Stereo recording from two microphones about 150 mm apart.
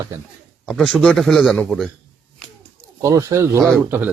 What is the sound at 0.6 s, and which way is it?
Speech, 5° left (ahead or behind).